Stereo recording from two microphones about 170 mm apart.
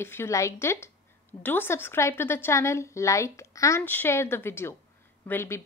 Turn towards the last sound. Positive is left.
turn(degrees=15)  # may be behind; listen again after turning